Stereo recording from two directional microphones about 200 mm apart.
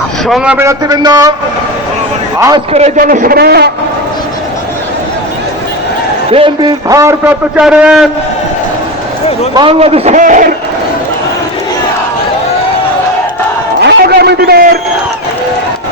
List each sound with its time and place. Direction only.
0.3 s a man's voice: 5° right (ahead or behind)
2.7 s a man's voice: 35° right (ahead or behind); by 3.7 s 50° right (ahead or behind)
6.3 s a man's voice: 25° right (ahead or behind); by 8.1 s 5° right (ahead or behind)
9.6 s a man's voice: 25° right (ahead or behind)
13.8 s a sound: 55° right (ahead or behind)